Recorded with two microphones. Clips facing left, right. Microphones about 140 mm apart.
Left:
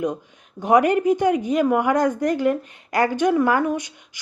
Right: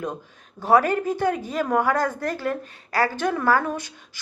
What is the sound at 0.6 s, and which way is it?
Speech, 20° left (ahead or behind).